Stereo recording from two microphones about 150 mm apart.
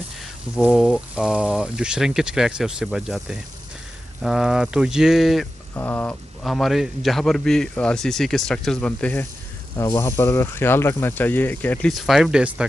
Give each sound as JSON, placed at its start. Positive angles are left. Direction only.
{"t": 0.7, "sound": "a man's voice", "side_deg": 5}
{"t": 5.8, "sound": "speech", "side_deg": 10}
{"t": 6.4, "sound": "a man's voice", "side_deg": 0}
{"t": 11.9, "sound": "a man's voice", "side_deg": 0}